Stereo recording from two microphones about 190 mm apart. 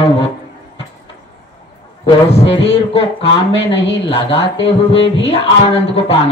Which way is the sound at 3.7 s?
70° left (ahead or behind).